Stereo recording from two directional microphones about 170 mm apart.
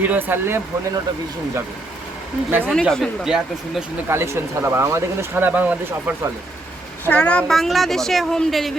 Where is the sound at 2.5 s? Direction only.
10° right (ahead or behind).